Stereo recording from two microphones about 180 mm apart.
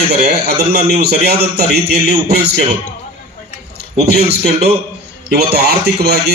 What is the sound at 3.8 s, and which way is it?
A man's voice, 65° right (ahead or behind).